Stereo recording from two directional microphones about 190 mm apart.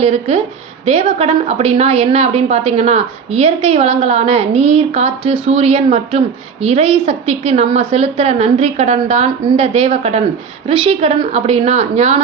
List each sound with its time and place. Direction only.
0.0 s a woman's voice: 35° right (ahead or behind)